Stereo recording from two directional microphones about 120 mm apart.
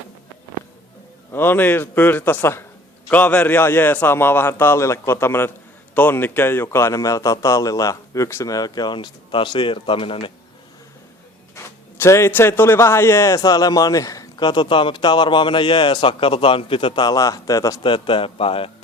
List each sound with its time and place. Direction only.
1.3 s a man's voice: 20° left (ahead or behind); by 10.3 s 45° left (ahead or behind)
11.5 s speech: 25° left (ahead or behind)
17.8 s a man's voice: 45° left (ahead or behind)